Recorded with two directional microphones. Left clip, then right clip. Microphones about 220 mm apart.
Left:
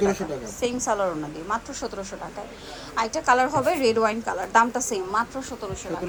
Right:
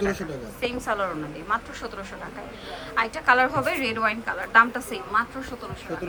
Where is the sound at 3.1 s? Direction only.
20° left (ahead or behind).